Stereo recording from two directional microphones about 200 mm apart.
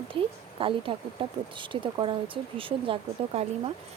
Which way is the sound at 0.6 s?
25° right (ahead or behind).